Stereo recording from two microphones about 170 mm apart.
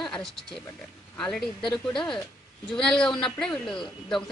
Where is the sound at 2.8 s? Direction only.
5° left (ahead or behind).